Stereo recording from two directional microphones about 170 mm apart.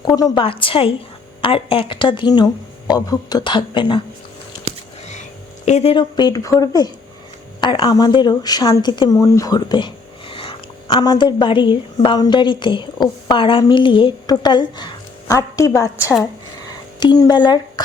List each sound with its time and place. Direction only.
0.0 s a woman's voice: 25° left (ahead or behind)
5.6 s a woman's voice: 40° left (ahead or behind)